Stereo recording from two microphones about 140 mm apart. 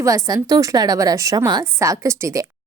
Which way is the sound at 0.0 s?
25° right (ahead or behind).